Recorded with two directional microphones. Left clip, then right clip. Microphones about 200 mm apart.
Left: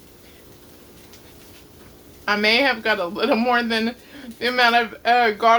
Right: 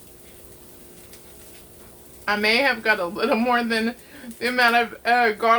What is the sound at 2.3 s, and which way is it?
Speech, 10° left (ahead or behind).